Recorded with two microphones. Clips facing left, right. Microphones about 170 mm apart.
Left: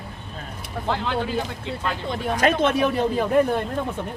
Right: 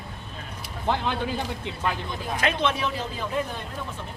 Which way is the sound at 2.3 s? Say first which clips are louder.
Left 6 dB; 45° left (ahead or behind).